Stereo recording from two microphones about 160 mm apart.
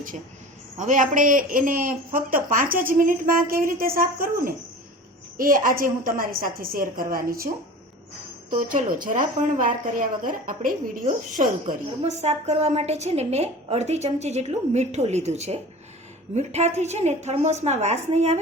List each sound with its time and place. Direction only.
0.8 s a woman's voice: 55° right (ahead or behind)
8.4 s a woman's voice: 55° right (ahead or behind)
11.6 s a woman's voice: 45° right (ahead or behind)